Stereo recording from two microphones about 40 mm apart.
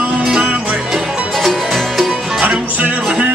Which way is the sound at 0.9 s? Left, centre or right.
Centre.